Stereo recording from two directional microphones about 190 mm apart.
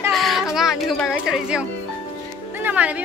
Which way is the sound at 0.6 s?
Centre (ahead or behind).